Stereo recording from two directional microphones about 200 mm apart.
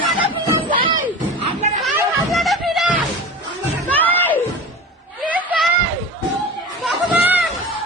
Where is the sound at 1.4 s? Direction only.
30° right (ahead or behind).